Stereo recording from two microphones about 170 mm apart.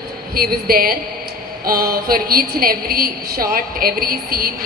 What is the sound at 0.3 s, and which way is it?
A woman's voice, 60° right (ahead or behind).